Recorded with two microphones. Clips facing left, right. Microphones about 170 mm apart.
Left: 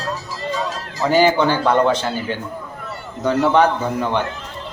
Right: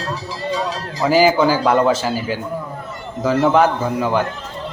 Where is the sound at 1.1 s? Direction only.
5° right (ahead or behind).